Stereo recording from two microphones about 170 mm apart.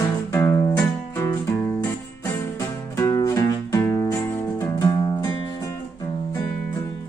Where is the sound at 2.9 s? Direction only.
20° left (ahead or behind).